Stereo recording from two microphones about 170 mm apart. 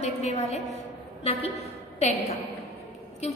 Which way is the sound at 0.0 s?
40° left (ahead or behind).